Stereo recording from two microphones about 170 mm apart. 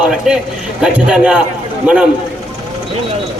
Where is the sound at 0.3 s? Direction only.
5° right (ahead or behind).